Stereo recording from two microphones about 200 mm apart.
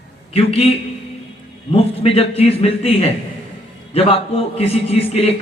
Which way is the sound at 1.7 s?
30° left (ahead or behind).